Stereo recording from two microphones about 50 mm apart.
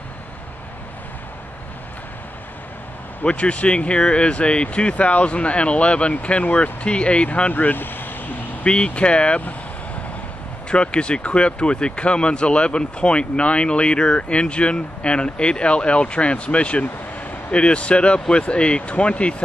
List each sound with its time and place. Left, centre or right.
3.3 s speech: left
8.6 s speech: left
10.7 s speech: left